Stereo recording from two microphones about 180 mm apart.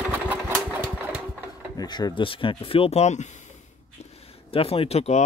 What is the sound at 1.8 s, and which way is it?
Speech, 20° left (ahead or behind).